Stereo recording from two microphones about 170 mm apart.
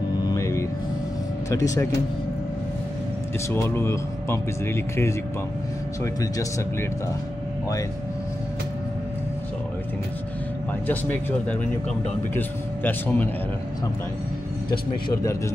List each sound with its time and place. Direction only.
0.2 s music: 20° left (ahead or behind)
1.5 s speech: 20° left (ahead or behind)
3.4 s speech: 15° left (ahead or behind)
10.9 s speech: 10° left (ahead or behind)
14.7 s speech: 25° left (ahead or behind)